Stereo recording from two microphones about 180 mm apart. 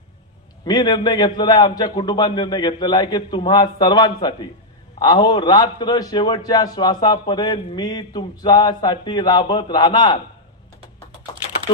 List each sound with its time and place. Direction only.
0.6 s a man's voice: 20° left (ahead or behind)